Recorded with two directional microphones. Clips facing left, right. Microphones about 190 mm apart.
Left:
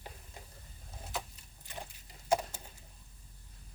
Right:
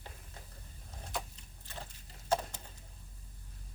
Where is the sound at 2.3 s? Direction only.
10° left (ahead or behind).